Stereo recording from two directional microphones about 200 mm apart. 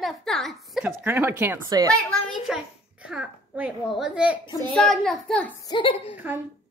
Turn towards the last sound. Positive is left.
turn(degrees=-10)  # may be behind; listen again after turning